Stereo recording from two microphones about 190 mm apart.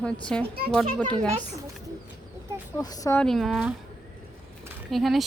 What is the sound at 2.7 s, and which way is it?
Speech, 20° left (ahead or behind).